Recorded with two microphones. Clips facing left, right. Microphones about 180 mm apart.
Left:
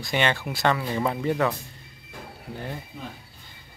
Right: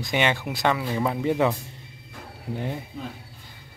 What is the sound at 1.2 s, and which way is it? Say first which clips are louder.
Speech: right 3 dB; 15° right (ahead or behind).